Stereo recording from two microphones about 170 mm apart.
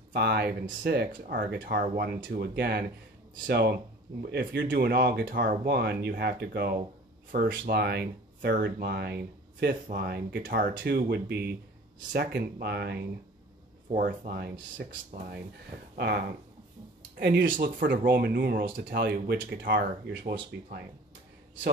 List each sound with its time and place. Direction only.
0.1 s speech: 70° right (ahead or behind)
0.8 s speech: 60° right (ahead or behind)
10.8 s speech: 75° right (ahead or behind)
13.9 s speech: 55° right (ahead or behind)
14.8 s speech: 80° right
15.1 s speech: 60° right (ahead or behind)
17.2 s speech: 80° right
17.6 s speech: 55° right (ahead or behind)